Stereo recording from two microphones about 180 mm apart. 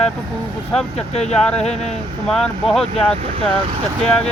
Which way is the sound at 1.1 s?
35° left (ahead or behind).